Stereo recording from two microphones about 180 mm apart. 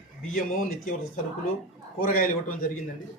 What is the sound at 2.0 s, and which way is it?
Speech, 50° left (ahead or behind).